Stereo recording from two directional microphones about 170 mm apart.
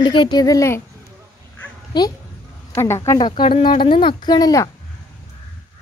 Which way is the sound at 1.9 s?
25° left (ahead or behind).